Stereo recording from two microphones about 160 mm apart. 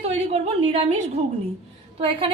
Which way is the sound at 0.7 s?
45° right (ahead or behind).